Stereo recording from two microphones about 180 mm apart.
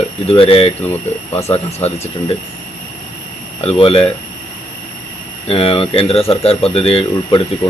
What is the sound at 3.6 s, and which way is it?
Speech, 35° left (ahead or behind).